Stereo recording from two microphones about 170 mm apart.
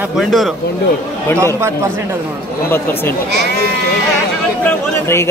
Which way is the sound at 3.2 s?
80° right.